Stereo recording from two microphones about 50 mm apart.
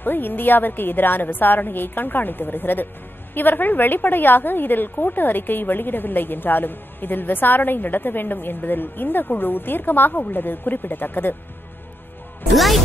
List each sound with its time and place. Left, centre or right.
0.0 s a woman's voice: left
12.5 s speech: centre